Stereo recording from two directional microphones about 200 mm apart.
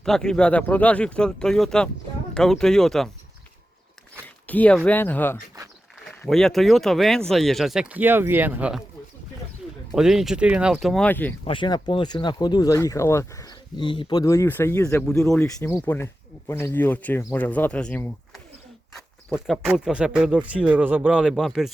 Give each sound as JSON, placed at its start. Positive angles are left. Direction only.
{"t": 0.0, "sound": "speech", "side_deg": 5}
{"t": 4.4, "sound": "speech", "side_deg": 5}
{"t": 9.9, "sound": "speech", "side_deg": 0}
{"t": 11.4, "sound": "speech", "side_deg": 25}
{"t": 19.3, "sound": "speech", "side_deg": -5}